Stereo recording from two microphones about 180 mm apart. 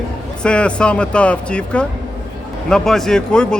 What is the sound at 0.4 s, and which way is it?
Speech, 5° left (ahead or behind).